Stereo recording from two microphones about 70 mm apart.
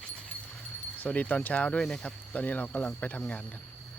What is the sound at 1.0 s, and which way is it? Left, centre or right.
Speech, left.